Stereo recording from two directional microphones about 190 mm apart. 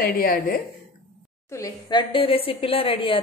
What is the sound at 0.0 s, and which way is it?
Speech, 50° left (ahead or behind).